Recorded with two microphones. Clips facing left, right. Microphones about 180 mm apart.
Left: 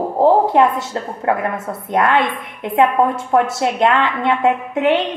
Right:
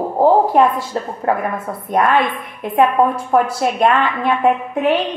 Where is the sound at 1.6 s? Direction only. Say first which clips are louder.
Right 1 dB; 25° left (ahead or behind).